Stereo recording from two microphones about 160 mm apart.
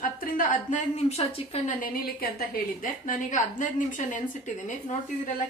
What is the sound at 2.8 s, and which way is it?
Speech, 55° left (ahead or behind).